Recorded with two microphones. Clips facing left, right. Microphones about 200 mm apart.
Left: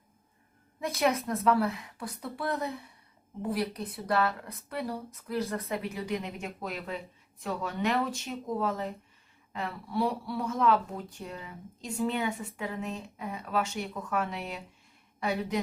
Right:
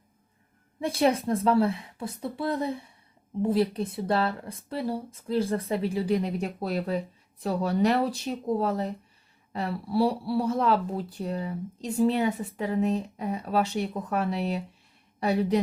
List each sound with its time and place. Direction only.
0.8 s a woman's voice: 30° right (ahead or behind)